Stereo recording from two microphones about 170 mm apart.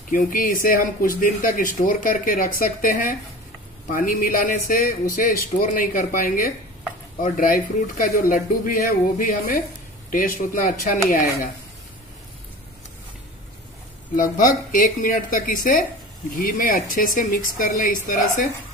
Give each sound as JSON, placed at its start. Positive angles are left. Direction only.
{"t": 0.1, "sound": "speech", "side_deg": 50}
{"t": 14.1, "sound": "speech", "side_deg": 50}